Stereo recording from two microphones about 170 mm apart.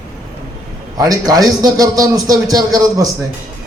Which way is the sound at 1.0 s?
20° right (ahead or behind).